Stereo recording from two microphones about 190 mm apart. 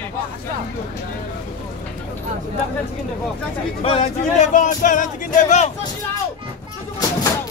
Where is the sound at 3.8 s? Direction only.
35° left (ahead or behind).